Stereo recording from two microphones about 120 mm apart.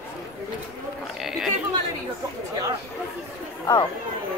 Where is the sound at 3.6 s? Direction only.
35° left (ahead or behind).